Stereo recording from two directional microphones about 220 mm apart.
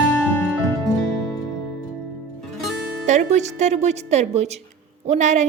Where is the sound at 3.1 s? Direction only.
30° right (ahead or behind).